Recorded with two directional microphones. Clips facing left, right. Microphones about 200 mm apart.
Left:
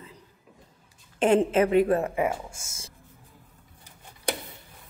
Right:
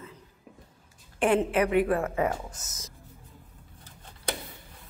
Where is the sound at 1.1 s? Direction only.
25° left (ahead or behind).